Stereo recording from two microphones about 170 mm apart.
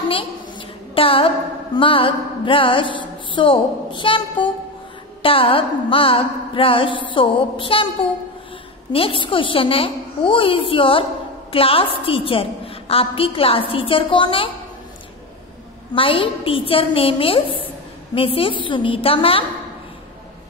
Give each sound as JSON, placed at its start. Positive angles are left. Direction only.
{"t": 0.1, "sound": "a sound", "side_deg": 30}
{"t": 1.8, "sound": "a woman's voice", "side_deg": 30}
{"t": 15.9, "sound": "a woman's voice", "side_deg": 30}